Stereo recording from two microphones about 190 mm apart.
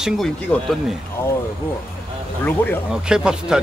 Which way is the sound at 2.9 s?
5° right (ahead or behind).